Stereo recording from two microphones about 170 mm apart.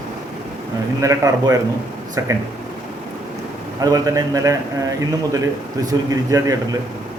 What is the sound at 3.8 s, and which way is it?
Speech, 20° right (ahead or behind).